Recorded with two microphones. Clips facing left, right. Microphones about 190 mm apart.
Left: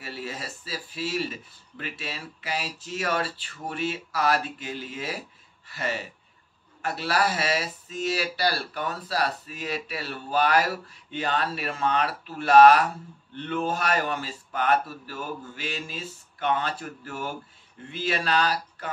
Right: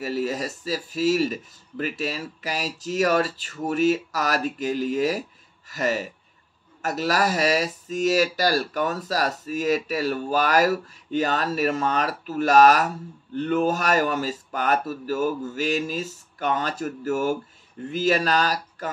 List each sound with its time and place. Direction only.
0.0 s speech: 40° right (ahead or behind)